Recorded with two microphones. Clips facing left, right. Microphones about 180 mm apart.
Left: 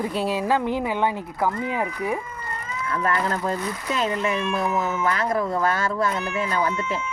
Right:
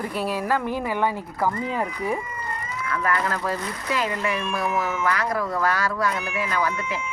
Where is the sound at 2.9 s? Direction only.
25° left (ahead or behind).